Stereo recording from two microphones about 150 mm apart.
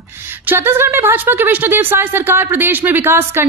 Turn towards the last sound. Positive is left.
turn(degrees=-15)  # may be behind; listen again after turning